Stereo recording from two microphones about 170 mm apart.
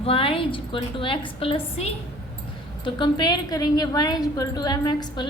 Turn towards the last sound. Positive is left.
turn(degrees=25)  # may be behind; listen again after turning